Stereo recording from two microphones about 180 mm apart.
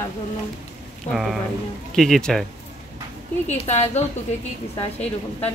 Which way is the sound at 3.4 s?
35° left (ahead or behind).